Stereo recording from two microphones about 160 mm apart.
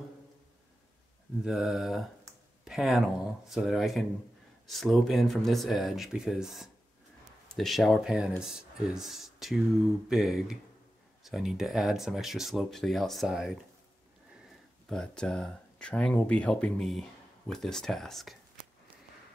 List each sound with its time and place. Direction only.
1.4 s speech: centre (ahead or behind)
14.9 s speech: 5° left (ahead or behind)